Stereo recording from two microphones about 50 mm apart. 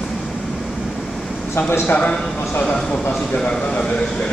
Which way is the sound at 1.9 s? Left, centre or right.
Left.